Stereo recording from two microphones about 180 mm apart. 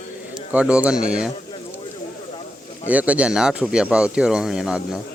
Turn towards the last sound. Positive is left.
turn(degrees=-5)  # may be behind; listen again after turning